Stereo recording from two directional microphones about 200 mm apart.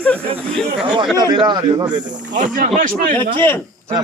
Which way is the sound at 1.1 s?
20° right (ahead or behind).